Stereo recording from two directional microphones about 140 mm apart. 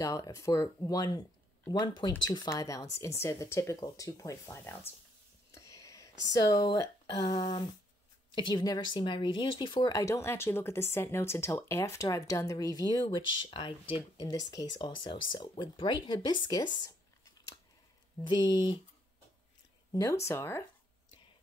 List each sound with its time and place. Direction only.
0.0 s a woman's voice: 25° left (ahead or behind)
14.2 s speech: 25° left (ahead or behind)
18.2 s speech: 30° left (ahead or behind)
19.9 s a woman's voice: 20° left (ahead or behind)